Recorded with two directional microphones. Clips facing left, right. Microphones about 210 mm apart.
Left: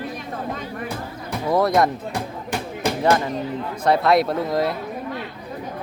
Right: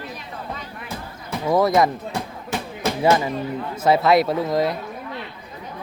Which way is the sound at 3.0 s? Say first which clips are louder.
Right 1 dB; 5° right (ahead or behind).